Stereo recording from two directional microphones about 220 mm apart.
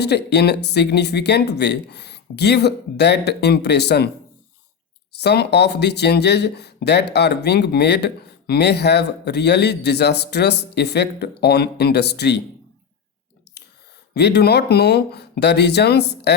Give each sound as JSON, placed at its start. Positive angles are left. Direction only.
{"t": 0.0, "sound": "speech", "side_deg": 50}
{"t": 5.1, "sound": "speech", "side_deg": 50}
{"t": 14.1, "sound": "speech", "side_deg": 50}